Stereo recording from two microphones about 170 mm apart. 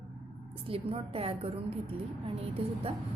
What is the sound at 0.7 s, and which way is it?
A woman's voice, 35° right (ahead or behind).